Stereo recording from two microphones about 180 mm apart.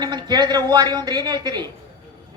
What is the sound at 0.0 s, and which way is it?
A woman's voice, 25° right (ahead or behind).